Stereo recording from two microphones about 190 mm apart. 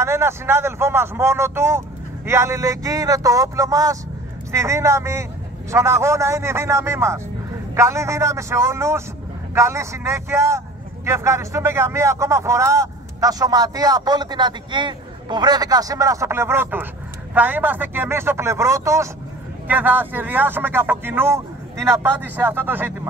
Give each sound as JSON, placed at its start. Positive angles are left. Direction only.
{"t": 0.0, "sound": "speech", "side_deg": -15}